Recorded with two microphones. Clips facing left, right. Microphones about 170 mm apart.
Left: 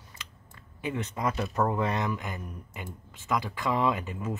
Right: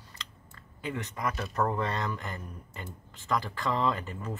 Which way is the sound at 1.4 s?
10° left (ahead or behind).